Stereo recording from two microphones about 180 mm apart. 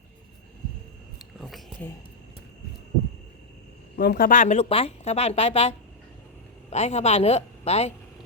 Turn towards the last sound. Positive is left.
turn(degrees=35)  # may be behind; listen again after turning